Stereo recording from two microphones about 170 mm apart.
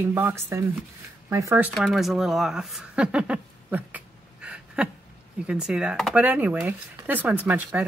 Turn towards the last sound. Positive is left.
turn(degrees=-10)  # may be behind; listen again after turning